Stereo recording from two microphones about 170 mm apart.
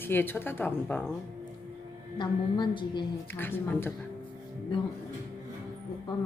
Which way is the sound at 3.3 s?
10° left (ahead or behind).